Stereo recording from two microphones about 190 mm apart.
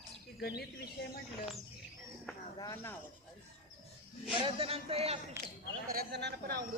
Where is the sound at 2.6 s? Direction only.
15° left (ahead or behind).